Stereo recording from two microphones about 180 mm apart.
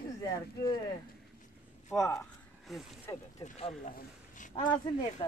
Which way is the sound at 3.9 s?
45° left (ahead or behind).